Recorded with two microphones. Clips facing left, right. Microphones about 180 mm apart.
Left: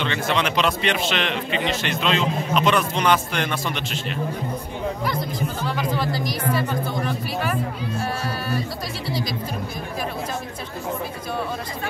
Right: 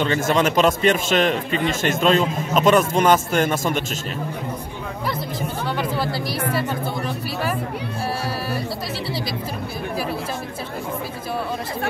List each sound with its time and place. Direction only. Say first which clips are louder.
0.0 s a man's voice: right 4 dB; 45° right (ahead or behind)